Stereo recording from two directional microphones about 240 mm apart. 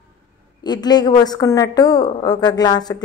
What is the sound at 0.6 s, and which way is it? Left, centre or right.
Speech, centre.